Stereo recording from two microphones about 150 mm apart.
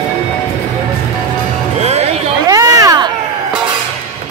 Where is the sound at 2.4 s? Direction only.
25° right (ahead or behind).